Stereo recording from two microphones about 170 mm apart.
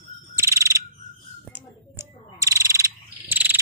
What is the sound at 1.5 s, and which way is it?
Frog, 15° right (ahead or behind).